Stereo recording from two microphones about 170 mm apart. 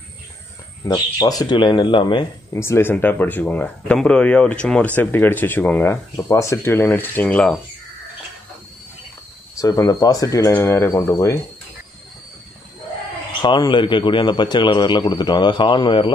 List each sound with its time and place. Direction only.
0.8 s a man's voice: 20° left (ahead or behind)
2.5 s speech: 15° left (ahead or behind)
9.6 s a man's voice: 20° left (ahead or behind)
13.4 s a man's voice: 25° left (ahead or behind)